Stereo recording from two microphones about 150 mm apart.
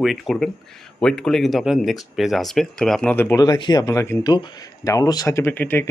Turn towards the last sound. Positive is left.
turn(degrees=10)  # may be behind; listen again after turning